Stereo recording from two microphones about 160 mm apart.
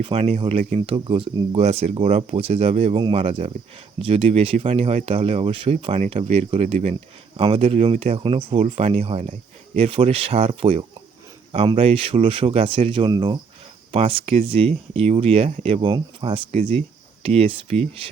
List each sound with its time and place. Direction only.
0.0 s speech: 35° right (ahead or behind)